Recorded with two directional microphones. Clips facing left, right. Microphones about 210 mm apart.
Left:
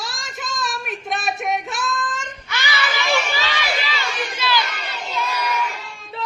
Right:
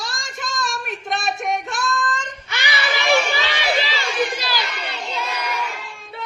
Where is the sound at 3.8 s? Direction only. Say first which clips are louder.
Right 3 dB; 30° right (ahead or behind).